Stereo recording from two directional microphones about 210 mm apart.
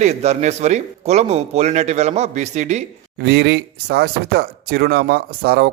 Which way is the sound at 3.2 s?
50° right (ahead or behind).